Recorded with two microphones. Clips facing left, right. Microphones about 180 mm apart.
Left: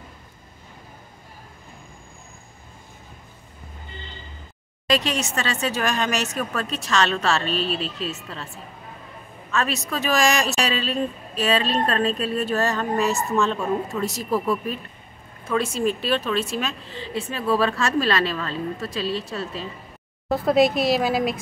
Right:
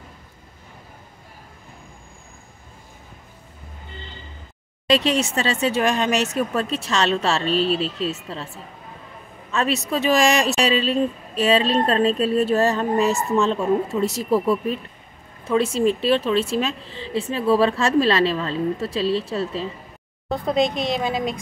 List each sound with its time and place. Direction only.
4.8 s speech: 30° right (ahead or behind)
9.5 s speech: 25° right (ahead or behind)
20.2 s speech: 5° left (ahead or behind)